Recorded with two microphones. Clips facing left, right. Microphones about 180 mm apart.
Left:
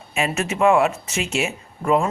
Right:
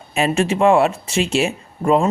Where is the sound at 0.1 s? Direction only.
35° right (ahead or behind).